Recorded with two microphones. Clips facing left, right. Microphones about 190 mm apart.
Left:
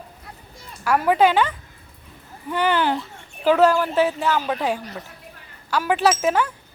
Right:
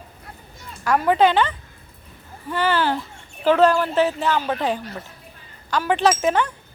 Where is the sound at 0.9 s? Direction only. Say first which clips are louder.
Even; 10° left (ahead or behind).